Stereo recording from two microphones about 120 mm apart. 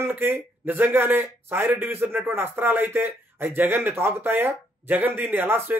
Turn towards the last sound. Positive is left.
turn(degrees=-20)  # may be behind; listen again after turning